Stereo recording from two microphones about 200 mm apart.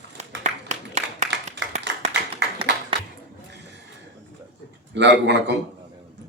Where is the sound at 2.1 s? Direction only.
60° right (ahead or behind).